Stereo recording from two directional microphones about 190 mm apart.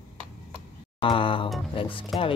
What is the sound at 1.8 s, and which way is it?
Music, 25° left (ahead or behind).